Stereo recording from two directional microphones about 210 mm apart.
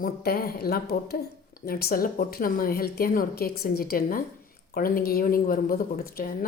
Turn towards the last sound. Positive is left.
turn(degrees=45)  # may be behind; listen again after turning